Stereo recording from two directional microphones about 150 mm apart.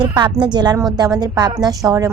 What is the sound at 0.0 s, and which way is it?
A woman's voice, 30° right (ahead or behind).